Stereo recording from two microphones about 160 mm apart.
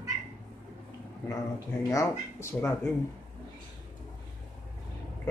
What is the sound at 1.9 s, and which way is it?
Speech, 15° left (ahead or behind).